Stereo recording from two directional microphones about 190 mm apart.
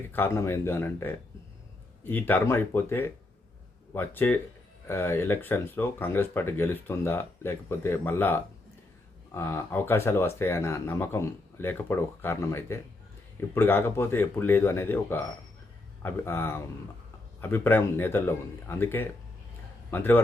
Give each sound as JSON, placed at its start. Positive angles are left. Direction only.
{"t": 0.1, "sound": "speech", "side_deg": 15}